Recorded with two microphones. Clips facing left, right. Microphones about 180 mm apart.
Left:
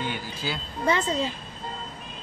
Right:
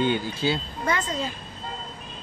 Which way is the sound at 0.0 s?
25° right (ahead or behind).